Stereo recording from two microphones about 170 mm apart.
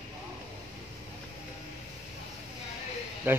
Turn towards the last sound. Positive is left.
turn(degrees=-10)  # may be behind; listen again after turning